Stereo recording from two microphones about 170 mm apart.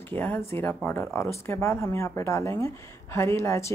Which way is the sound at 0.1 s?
10° left (ahead or behind).